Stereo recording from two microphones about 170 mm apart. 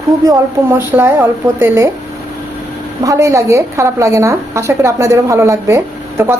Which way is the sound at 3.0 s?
20° right (ahead or behind).